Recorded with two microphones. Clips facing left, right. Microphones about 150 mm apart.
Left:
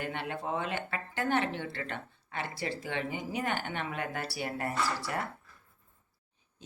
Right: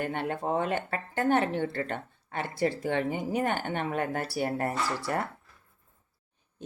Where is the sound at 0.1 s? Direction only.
45° right (ahead or behind).